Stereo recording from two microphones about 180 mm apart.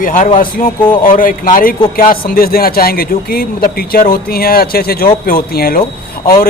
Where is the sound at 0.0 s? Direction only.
45° left (ahead or behind).